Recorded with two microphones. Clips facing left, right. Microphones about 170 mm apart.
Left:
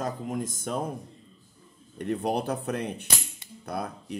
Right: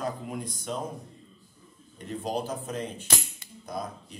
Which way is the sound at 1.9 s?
65° left (ahead or behind).